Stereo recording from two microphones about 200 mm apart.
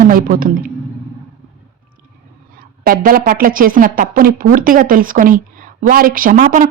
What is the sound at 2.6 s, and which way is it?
A woman's voice, 45° right (ahead or behind).